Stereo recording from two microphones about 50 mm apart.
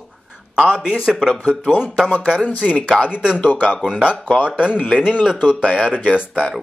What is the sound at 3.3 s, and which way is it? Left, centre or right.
Speech, left.